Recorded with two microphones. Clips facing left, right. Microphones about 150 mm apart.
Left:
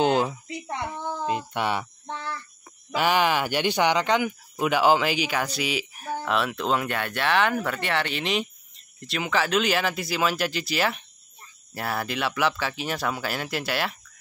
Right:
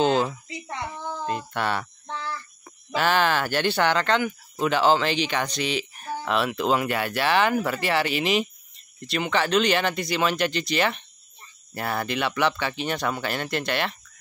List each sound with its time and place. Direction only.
0.0 s speech: 15° left (ahead or behind)
0.5 s a child's voice: 55° left (ahead or behind)
1.0 s child singing: 15° left (ahead or behind)
2.9 s speech: 10° left (ahead or behind)